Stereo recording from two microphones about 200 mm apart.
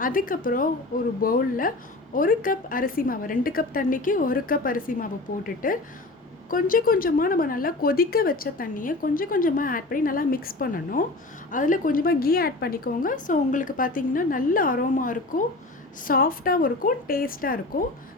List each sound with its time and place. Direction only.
0.0 s a woman's voice: 45° left (ahead or behind)